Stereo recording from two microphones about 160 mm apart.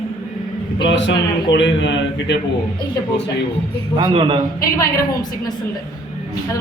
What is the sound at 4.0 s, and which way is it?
Speech, 30° right (ahead or behind).